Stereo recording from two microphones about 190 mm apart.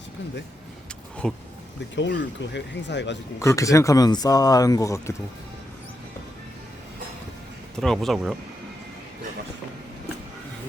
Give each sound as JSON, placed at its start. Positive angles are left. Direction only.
{"t": 1.2, "sound": "speech", "side_deg": 0}
{"t": 2.0, "sound": "speech", "side_deg": 70}
{"t": 3.4, "sound": "speech", "side_deg": 15}
{"t": 7.8, "sound": "speech", "side_deg": 0}